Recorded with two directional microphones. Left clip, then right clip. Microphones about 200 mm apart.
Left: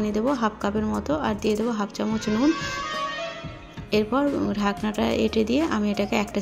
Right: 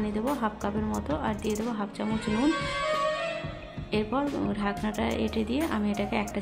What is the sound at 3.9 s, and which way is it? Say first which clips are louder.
Speech: left 6 dB; 20° left (ahead or behind).